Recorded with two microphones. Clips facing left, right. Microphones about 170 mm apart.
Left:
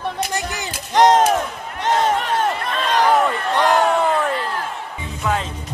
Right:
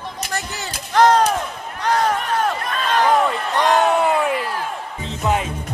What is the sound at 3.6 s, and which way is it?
Speech, 10° right (ahead or behind).